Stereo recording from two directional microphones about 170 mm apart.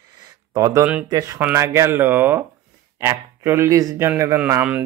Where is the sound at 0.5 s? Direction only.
20° right (ahead or behind).